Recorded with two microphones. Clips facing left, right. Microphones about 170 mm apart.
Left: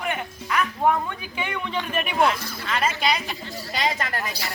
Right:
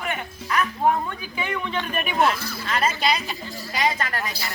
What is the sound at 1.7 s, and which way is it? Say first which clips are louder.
Speech: left 1 dB; 10° left (ahead or behind).